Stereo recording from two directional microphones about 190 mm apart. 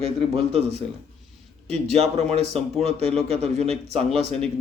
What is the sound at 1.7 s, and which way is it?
A man's voice, 35° right (ahead or behind).